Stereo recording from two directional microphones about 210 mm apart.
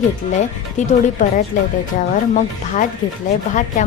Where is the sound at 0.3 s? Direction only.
35° left (ahead or behind).